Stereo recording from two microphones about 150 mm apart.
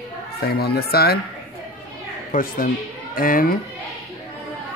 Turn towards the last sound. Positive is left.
turn(degrees=70)  # may be behind; listen again after turning